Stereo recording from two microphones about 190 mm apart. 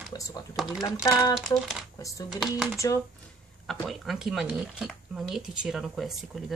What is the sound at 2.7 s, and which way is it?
Speech, 15° left (ahead or behind).